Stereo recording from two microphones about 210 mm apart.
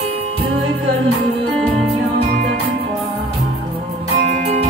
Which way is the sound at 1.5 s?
Centre (ahead or behind).